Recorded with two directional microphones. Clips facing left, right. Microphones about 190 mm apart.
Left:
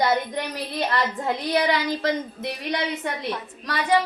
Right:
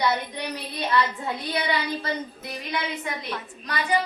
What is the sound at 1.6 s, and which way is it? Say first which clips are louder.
Speech: left 4 dB; 85° left.